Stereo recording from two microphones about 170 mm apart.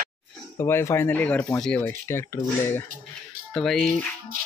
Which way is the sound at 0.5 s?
15° left (ahead or behind).